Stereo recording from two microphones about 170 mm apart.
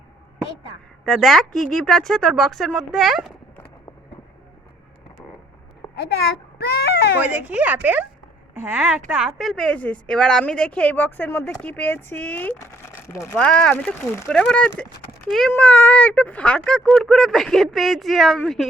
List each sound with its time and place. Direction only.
1.0 s a child's voice: centre (ahead or behind)
6.6 s a sound: 70° left (ahead or behind)
7.3 s a woman's voice: 10° right (ahead or behind)